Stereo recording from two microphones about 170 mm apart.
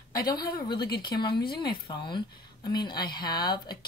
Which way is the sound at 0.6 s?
25° left (ahead or behind).